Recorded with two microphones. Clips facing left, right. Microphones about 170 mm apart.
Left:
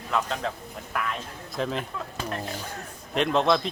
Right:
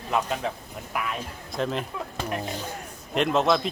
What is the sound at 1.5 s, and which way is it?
Speech, centre (ahead or behind).